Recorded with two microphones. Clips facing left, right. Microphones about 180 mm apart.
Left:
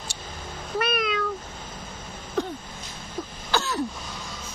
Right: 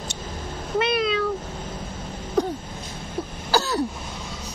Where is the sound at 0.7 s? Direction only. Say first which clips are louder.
Right 4 dB; 25° right (ahead or behind).